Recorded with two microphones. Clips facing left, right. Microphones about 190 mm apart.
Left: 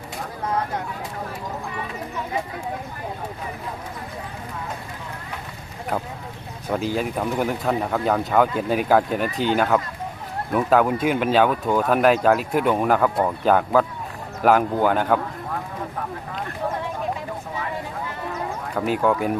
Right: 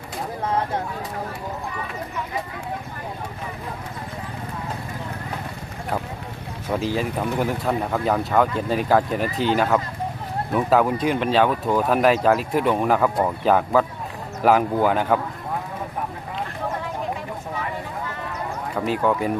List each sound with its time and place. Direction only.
6.7 s speech: centre (ahead or behind)
18.7 s speech: centre (ahead or behind)